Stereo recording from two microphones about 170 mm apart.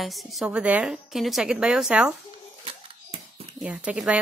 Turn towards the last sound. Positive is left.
turn(degrees=-5)  # may be behind; listen again after turning